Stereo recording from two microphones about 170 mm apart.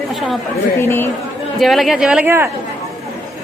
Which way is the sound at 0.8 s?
15° left (ahead or behind).